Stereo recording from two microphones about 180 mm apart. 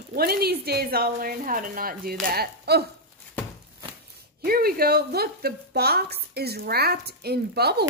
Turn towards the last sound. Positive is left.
turn(degrees=-65)  # may be behind; listen again after turning